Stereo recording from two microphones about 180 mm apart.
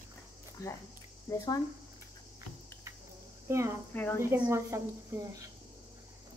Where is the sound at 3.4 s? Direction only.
15° right (ahead or behind).